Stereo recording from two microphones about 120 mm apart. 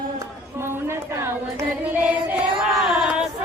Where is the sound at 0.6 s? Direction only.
20° right (ahead or behind).